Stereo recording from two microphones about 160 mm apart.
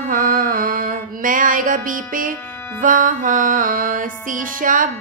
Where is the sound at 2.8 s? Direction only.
55° right (ahead or behind).